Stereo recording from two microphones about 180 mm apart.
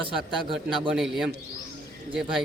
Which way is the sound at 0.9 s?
Centre (ahead or behind).